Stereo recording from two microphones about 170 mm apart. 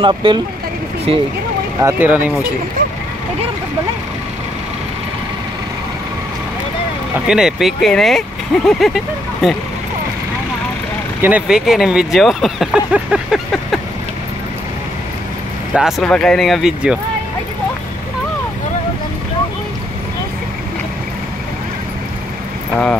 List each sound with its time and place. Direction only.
0.0 s speech: 30° right (ahead or behind)
1.8 s speech: 15° right (ahead or behind)
7.2 s speech: 5° right (ahead or behind)
11.2 s speech: 5° right (ahead or behind)
15.7 s speech: centre (ahead or behind)